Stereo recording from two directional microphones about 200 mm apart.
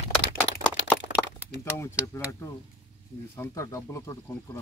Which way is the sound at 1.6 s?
15° left (ahead or behind).